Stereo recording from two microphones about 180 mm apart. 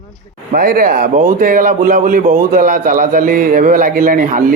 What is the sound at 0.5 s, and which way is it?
A man's voice, 55° right (ahead or behind).